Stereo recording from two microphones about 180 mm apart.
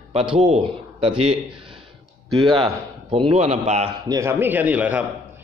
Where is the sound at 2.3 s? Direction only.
30° right (ahead or behind).